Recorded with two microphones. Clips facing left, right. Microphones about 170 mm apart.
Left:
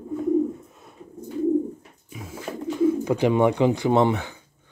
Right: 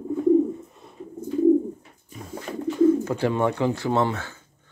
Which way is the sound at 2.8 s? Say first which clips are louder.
Right 1 dB; 15° left (ahead or behind).